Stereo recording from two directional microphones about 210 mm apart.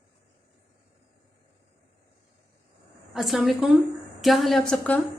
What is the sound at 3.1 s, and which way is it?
A woman's voice, centre (ahead or behind).